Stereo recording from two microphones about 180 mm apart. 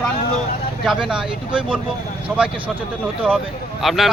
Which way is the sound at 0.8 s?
5° right (ahead or behind).